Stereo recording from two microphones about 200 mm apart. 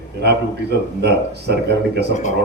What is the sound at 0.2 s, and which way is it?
A man's voice, 55° right (ahead or behind).